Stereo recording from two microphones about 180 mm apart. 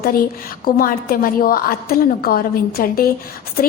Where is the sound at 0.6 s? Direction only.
55° left (ahead or behind).